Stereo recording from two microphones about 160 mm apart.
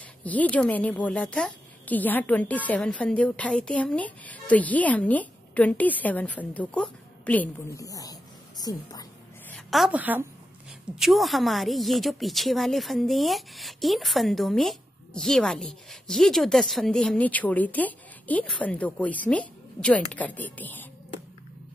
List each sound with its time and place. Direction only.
0.2 s speech: 10° left (ahead or behind)
7.7 s a sound: 20° left (ahead or behind)
9.5 s a woman's voice: centre (ahead or behind)